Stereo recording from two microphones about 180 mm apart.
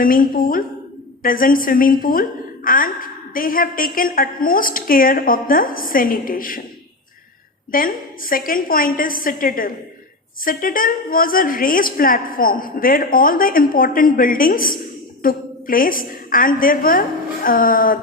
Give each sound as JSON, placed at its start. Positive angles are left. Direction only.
{"t": 0.0, "sound": "a woman's voice", "side_deg": 50}
{"t": 7.7, "sound": "a woman's voice", "side_deg": 50}